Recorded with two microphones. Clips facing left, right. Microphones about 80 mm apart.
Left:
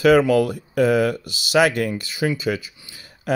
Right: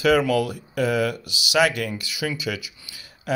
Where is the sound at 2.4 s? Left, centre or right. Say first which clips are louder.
Left 5 dB; left.